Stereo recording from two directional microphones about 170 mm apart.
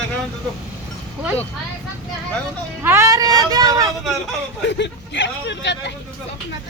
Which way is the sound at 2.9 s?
15° right (ahead or behind).